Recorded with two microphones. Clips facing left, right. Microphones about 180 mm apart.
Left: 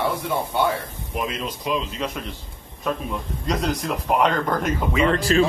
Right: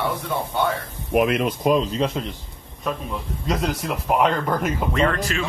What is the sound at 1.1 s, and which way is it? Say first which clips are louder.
A man's voice: right 9 dB; 65° right (ahead or behind).